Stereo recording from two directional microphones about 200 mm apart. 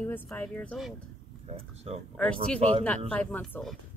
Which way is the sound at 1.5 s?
30° right (ahead or behind).